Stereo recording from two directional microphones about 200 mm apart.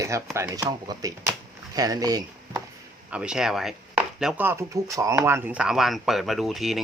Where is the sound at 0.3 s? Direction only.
15° right (ahead or behind).